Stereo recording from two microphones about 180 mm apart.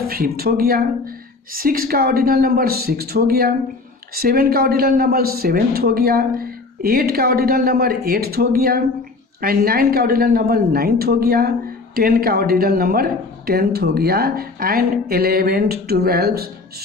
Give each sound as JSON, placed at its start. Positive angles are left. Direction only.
{"t": 0.1, "sound": "a woman's voice", "side_deg": -55}